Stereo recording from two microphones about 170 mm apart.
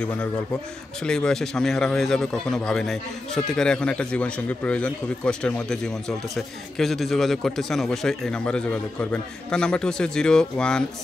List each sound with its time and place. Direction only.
0.0 s a man's voice: 5° left (ahead or behind)